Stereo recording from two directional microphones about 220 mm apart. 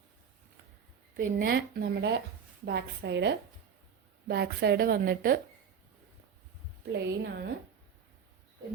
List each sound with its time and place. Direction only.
1.1 s a woman's voice: 40° right (ahead or behind)
6.9 s a woman's voice: 50° right (ahead or behind)